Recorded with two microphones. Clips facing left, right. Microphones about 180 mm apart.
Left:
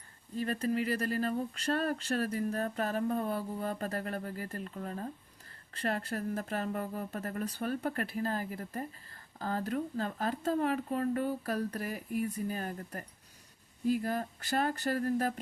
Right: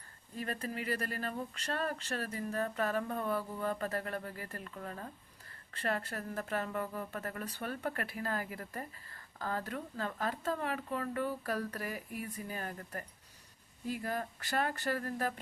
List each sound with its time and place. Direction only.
0.3 s speech: 35° left (ahead or behind)